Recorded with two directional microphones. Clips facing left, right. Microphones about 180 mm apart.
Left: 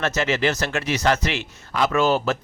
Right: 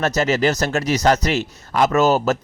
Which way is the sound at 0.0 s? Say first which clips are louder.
Right 4 dB; 40° right (ahead or behind).